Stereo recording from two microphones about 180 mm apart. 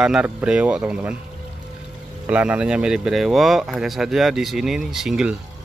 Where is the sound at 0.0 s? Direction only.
5° right (ahead or behind).